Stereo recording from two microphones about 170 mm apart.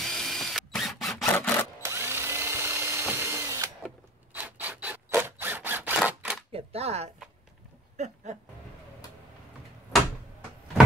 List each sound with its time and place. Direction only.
0.0 s drill: centre (ahead or behind)
1.3 s wood: 10° left (ahead or behind)
1.8 s drill: 15° right (ahead or behind)
4.3 s a sound: 10° right (ahead or behind)
5.9 s camera: 5° right (ahead or behind)
6.5 s a sound: 35° right (ahead or behind)
8.0 s music: 45° right (ahead or behind)